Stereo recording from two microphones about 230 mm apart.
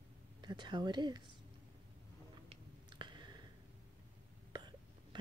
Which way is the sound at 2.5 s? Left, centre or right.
Right.